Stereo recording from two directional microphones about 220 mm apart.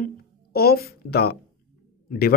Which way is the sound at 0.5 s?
45° left (ahead or behind).